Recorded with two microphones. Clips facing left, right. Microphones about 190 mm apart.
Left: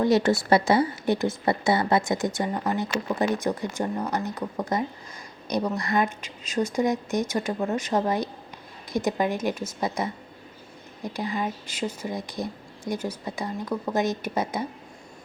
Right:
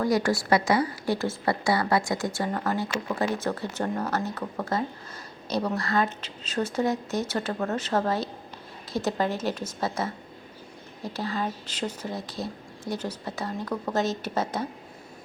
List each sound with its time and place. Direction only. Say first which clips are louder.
0.0 s a woman's voice: left 3 dB; 25° left (ahead or behind)